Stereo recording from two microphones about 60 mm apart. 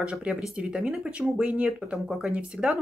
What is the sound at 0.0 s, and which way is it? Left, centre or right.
Speech, centre.